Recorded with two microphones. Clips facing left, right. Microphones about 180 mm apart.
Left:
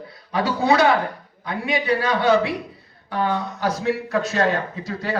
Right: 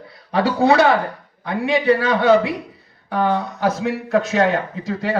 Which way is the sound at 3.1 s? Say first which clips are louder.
Right 4 dB; 50° right (ahead or behind).